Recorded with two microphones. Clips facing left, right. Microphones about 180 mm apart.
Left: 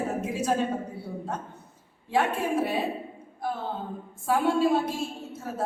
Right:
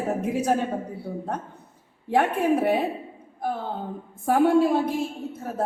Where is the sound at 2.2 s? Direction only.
55° right (ahead or behind).